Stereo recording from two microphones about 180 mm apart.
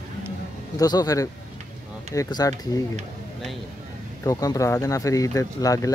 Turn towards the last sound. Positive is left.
turn(degrees=20)  # may be behind; listen again after turning